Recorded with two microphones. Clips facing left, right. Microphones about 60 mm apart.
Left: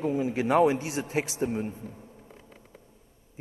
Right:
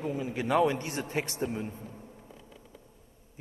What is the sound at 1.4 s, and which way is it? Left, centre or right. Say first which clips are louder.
Speech: left 4 dB; left.